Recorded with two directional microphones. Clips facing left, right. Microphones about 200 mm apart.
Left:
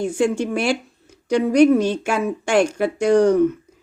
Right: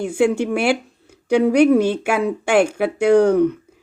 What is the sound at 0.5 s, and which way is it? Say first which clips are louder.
Speech: right 2 dB; 65° right (ahead or behind).